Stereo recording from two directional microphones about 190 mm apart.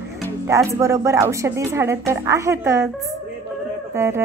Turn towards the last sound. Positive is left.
turn(degrees=-15)  # may be behind; listen again after turning